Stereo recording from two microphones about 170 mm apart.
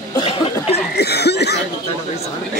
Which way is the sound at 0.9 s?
75° left (ahead or behind).